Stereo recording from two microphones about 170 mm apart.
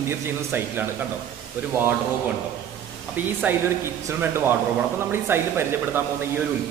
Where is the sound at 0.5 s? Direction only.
10° right (ahead or behind).